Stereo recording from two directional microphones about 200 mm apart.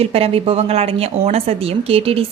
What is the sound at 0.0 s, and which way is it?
A woman's voice, 30° right (ahead or behind).